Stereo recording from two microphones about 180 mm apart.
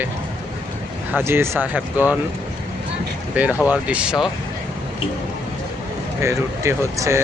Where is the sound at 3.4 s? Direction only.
10° right (ahead or behind).